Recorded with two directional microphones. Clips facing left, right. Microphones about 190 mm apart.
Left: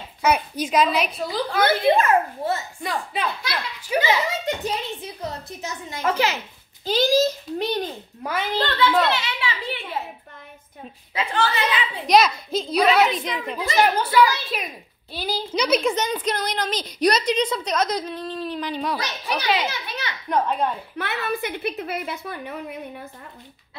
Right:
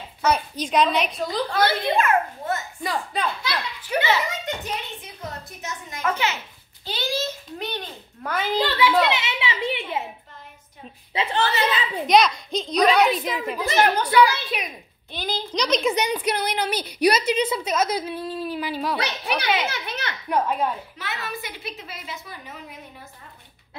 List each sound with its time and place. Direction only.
0.2 s a child's voice: 10° left (ahead or behind)
1.6 s a child's voice: 45° left (ahead or behind)
2.8 s a child's voice: centre (ahead or behind)
5.6 s a child's voice: 30° left (ahead or behind)
8.3 s a woman's voice: 5° right (ahead or behind); by 10.0 s 20° right (ahead or behind)
11.1 s speech: 20° right (ahead or behind)
12.1 s a child's voice: centre (ahead or behind)
13.6 s a woman's voice: 5° left (ahead or behind)
15.9 s a woman's voice: 10° right (ahead or behind)
18.9 s speech: 65° right (ahead or behind)
19.4 s a child's voice: centre (ahead or behind)
21.0 s a woman's voice: 60° left (ahead or behind)